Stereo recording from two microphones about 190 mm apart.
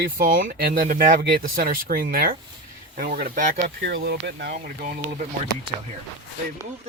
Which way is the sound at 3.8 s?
55° right (ahead or behind).